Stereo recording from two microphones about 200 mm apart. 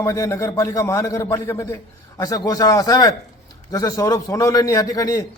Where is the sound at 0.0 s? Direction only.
15° left (ahead or behind).